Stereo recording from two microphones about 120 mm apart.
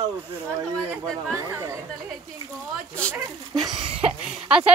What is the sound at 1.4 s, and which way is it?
Speech, 25° right (ahead or behind).